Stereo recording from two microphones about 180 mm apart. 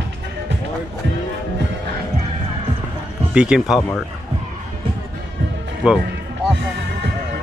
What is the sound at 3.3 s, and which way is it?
Speech, 5° right (ahead or behind).